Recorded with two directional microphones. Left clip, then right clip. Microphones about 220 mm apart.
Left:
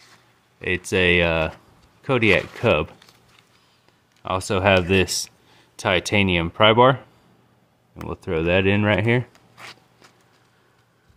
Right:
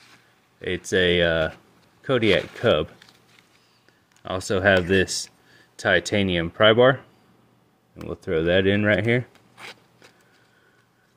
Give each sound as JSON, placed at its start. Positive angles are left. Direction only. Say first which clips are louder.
{"t": 0.6, "sound": "speech", "louder": "left 1 dB", "side_deg": 20}
{"t": 4.2, "sound": "speech", "louder": "left 2 dB", "side_deg": 15}